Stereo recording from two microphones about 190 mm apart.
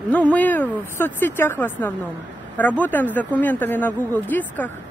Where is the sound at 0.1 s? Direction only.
5° left (ahead or behind).